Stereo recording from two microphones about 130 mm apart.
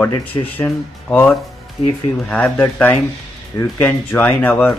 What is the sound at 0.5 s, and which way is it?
Speech, 15° left (ahead or behind).